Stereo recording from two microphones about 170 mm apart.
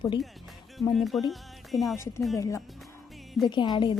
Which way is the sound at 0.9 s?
Centre (ahead or behind).